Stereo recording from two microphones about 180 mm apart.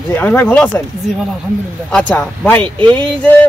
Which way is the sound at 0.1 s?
10° left (ahead or behind).